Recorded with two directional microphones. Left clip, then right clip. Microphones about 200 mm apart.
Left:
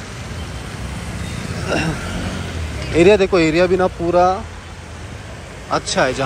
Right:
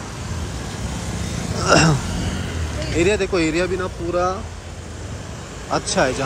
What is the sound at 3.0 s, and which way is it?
Speech, 5° right (ahead or behind).